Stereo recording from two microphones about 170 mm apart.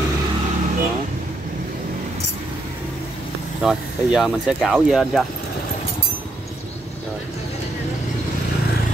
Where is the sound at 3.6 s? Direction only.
Centre (ahead or behind).